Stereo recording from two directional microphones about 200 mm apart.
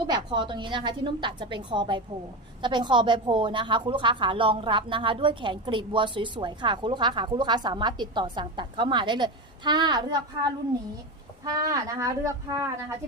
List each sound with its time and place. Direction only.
0.1 s a woman's voice: 25° right (ahead or behind)
11.4 s speech: 15° right (ahead or behind)